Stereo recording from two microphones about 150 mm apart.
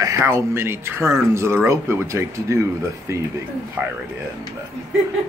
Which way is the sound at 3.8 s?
10° right (ahead or behind).